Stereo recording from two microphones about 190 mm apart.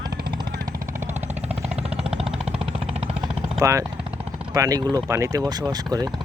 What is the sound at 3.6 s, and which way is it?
Speech, 15° right (ahead or behind).